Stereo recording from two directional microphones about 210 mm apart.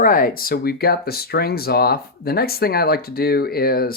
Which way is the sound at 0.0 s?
40° left (ahead or behind).